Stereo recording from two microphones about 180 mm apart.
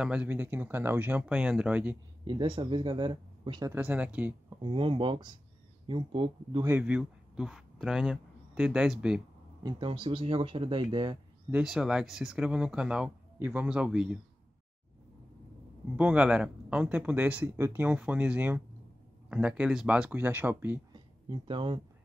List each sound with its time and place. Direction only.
0.0 s speech: 5° right (ahead or behind)
2.2 s speech: 25° right (ahead or behind)
3.7 s speech: 10° right (ahead or behind)
4.6 s speech: 30° right (ahead or behind)
6.6 s a man's voice: 10° right (ahead or behind)
9.6 s speech: 25° right (ahead or behind)
11.5 s speech: centre (ahead or behind)
16.0 s speech: 5° right (ahead or behind)
20.9 s a sound: 25° right (ahead or behind)